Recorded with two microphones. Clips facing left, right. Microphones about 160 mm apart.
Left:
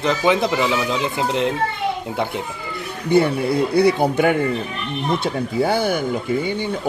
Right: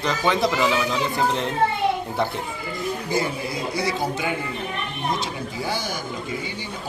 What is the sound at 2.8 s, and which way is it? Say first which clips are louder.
Speech: left 8 dB; 65° left (ahead or behind).